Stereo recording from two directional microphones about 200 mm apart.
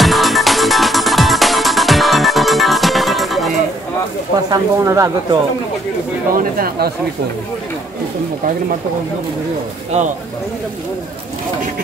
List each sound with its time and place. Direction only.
0.0 s music: centre (ahead or behind)
4.5 s speech: 15° right (ahead or behind)
6.3 s speech: 50° right (ahead or behind)